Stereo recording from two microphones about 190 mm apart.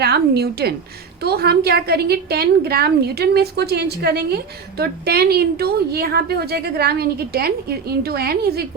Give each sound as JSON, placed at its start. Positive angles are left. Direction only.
{"t": 0.0, "sound": "a woman's voice", "side_deg": -60}